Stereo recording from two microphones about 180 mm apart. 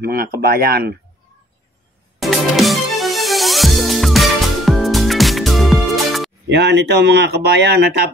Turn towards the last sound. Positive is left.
turn(degrees=-65)  # may be behind; listen again after turning